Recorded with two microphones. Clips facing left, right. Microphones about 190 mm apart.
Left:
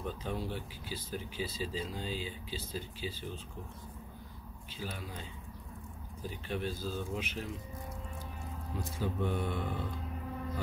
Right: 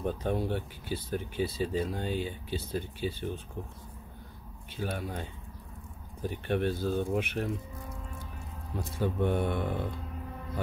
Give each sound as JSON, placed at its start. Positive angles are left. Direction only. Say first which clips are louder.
{"t": 0.0, "sound": "speech", "louder": "right 7 dB", "side_deg": -55}
{"t": 4.7, "sound": "speech", "louder": "right 8 dB", "side_deg": -60}
{"t": 9.0, "sound": "speech", "louder": "right 6 dB", "side_deg": -60}